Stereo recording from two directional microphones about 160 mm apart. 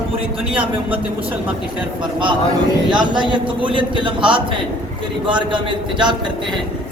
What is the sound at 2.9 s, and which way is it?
A man's voice, 30° right (ahead or behind).